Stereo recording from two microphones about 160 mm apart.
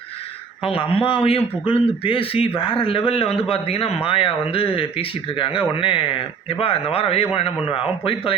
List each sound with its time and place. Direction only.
0.6 s speech: 35° left (ahead or behind)